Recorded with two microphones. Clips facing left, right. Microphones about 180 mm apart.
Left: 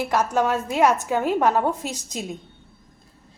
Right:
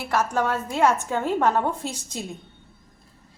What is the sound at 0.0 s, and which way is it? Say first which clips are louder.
A woman's voice: left 2 dB; 15° left (ahead or behind).